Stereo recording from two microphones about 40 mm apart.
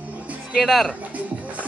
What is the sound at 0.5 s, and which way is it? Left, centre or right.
Speech, centre.